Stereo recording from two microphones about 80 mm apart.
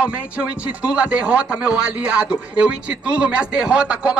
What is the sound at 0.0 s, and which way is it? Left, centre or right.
Speech, centre.